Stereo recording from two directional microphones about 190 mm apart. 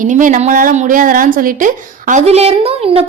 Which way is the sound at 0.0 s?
45° right (ahead or behind).